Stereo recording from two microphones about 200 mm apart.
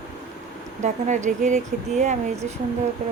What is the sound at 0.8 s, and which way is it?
A woman's voice, 35° right (ahead or behind).